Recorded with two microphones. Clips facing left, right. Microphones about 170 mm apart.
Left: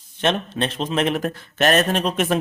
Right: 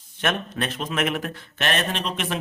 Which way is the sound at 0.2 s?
30° left (ahead or behind).